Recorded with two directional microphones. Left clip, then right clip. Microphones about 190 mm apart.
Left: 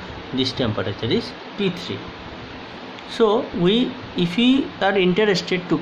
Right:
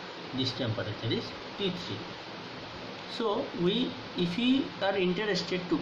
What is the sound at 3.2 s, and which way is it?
Speech, 55° left (ahead or behind).